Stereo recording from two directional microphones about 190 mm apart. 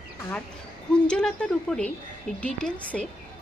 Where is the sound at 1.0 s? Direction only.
5° left (ahead or behind).